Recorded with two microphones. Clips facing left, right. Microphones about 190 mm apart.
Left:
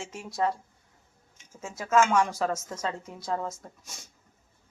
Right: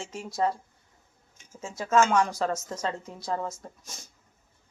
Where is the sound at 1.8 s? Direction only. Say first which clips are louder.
Right 1 dB; 5° left (ahead or behind).